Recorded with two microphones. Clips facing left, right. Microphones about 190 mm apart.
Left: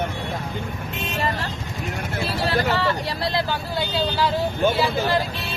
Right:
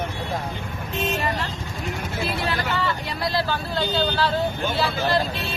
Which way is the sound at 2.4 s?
40° left (ahead or behind).